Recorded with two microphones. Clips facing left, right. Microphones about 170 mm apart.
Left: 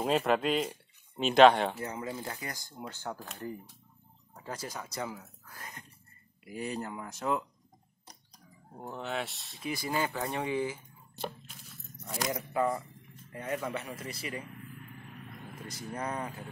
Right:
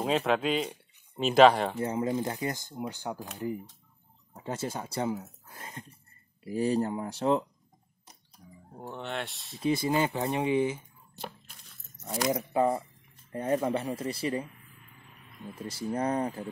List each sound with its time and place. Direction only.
0.0 s speech: centre (ahead or behind)
1.8 s speech: 25° right (ahead or behind)
4.3 s speech: 20° right (ahead or behind)
8.7 s speech: centre (ahead or behind)
9.6 s speech: 25° right (ahead or behind)
12.0 s speech: 20° right (ahead or behind)
15.6 s speech: 30° right (ahead or behind)